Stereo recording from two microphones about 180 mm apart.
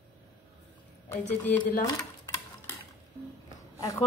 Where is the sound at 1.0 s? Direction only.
10° left (ahead or behind).